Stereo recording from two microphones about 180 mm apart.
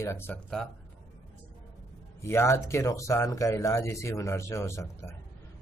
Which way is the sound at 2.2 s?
15° left (ahead or behind).